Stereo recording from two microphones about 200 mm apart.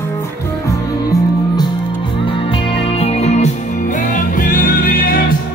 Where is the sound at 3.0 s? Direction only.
30° left (ahead or behind).